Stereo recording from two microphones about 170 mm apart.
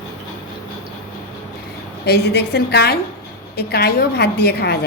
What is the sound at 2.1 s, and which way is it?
A woman's voice, 70° left (ahead or behind).